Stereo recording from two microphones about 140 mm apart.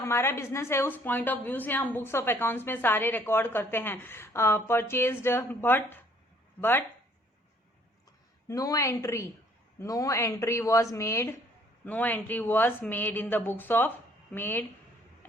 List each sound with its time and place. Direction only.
0.0 s a woman's voice: 20° left (ahead or behind)
8.4 s a woman's voice: 25° left (ahead or behind)